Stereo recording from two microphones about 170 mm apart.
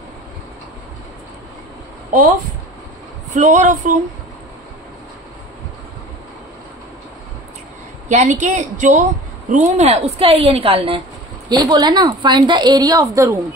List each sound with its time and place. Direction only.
3.3 s a woman's voice: 45° right (ahead or behind)
8.1 s a woman's voice: 45° right (ahead or behind)
11.4 s a woman's voice: 20° right (ahead or behind)